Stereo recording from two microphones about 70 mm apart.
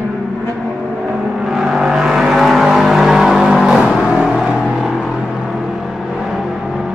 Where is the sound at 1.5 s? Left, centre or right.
Centre.